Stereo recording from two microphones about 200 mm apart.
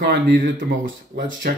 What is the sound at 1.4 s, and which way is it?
Speech, 50° right (ahead or behind).